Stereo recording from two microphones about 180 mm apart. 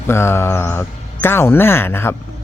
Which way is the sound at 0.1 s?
15° left (ahead or behind).